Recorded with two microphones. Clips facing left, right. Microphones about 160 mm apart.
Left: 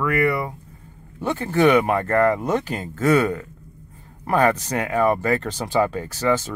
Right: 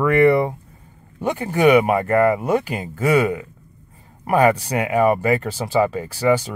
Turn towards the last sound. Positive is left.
turn(degrees=-10)  # may be behind; listen again after turning